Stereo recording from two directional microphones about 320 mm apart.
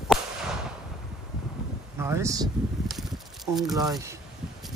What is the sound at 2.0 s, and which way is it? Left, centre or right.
Speech, centre.